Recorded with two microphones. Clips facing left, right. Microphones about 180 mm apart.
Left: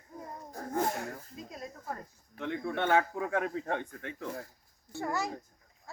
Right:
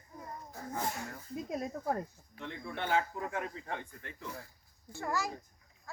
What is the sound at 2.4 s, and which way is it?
Speech, 65° left (ahead or behind).